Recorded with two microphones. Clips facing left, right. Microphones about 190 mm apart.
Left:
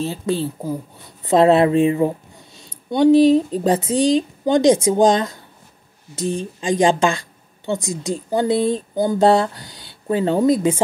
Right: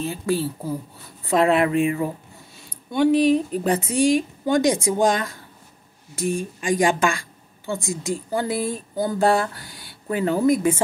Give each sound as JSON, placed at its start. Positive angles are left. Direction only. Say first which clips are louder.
{"t": 0.0, "sound": "speech", "louder": "left 2 dB", "side_deg": 25}